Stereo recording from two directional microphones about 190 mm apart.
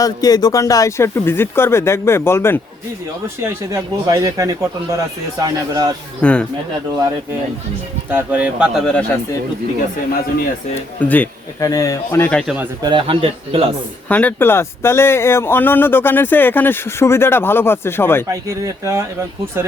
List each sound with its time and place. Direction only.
0.0 s speech: 20° left (ahead or behind)
3.4 s speech: 15° right (ahead or behind)
6.2 s speech: 5° left (ahead or behind)
8.1 s speech: 10° right (ahead or behind)
10.8 s speech: 10° left (ahead or behind)
12.8 s a man's voice: 25° right (ahead or behind)
14.1 s speech: 10° left (ahead or behind)
18.3 s speech: 15° right (ahead or behind)